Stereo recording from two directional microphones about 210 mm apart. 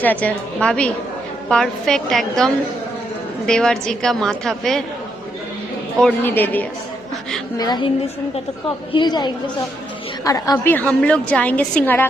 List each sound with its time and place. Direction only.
0.0 s a woman's voice: 5° left (ahead or behind)
6.0 s a woman's voice: 5° left (ahead or behind)
7.6 s a woman's voice: 20° left (ahead or behind)
8.9 s a woman's voice: 20° left (ahead or behind)